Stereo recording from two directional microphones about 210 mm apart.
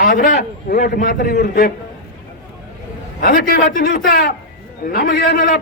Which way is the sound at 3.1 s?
45° left (ahead or behind).